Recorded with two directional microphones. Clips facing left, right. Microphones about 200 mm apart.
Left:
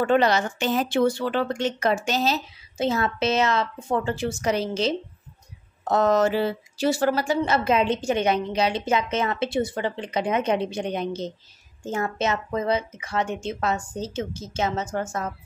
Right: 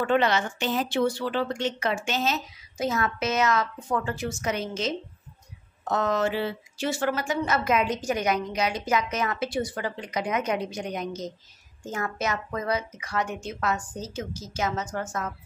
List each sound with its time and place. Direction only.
0.0 s a woman's voice: 40° left (ahead or behind)